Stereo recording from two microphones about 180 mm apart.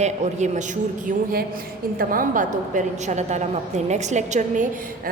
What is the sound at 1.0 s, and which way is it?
A woman's voice, 55° right (ahead or behind).